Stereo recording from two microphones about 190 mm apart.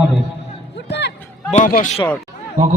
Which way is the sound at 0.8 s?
65° left (ahead or behind).